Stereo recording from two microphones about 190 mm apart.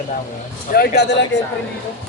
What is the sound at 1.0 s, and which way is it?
Speech, 65° left (ahead or behind).